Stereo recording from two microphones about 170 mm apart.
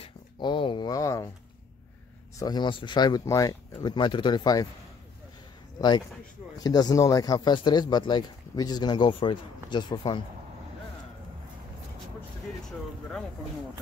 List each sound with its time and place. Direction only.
0.0 s speech: 30° left (ahead or behind)
2.3 s speech: 25° left (ahead or behind)
5.8 s speech: 25° left (ahead or behind)